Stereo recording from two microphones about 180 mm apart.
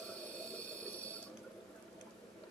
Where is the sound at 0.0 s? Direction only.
5° left (ahead or behind).